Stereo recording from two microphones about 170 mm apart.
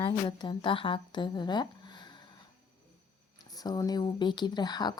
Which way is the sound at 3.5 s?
20° left (ahead or behind).